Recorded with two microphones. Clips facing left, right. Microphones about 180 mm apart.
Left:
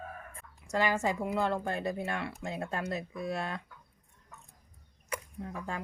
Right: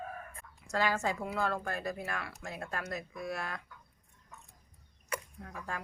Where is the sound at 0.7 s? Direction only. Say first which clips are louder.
Left 2 dB; 15° left (ahead or behind).